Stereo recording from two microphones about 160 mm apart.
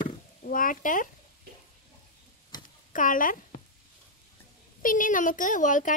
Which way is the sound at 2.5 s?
25° left (ahead or behind).